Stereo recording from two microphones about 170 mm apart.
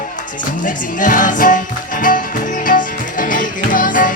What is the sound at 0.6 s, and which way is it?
Music, 50° left (ahead or behind).